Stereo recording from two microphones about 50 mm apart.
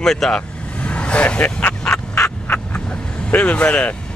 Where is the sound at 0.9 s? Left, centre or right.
Left.